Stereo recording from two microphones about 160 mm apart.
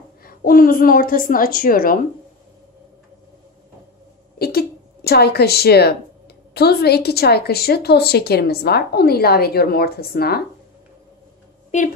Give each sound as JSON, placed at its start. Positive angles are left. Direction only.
{"t": 0.2, "sound": "a woman's voice", "side_deg": 65}
{"t": 4.4, "sound": "a woman's voice", "side_deg": 75}
{"t": 11.7, "sound": "a woman's voice", "side_deg": 45}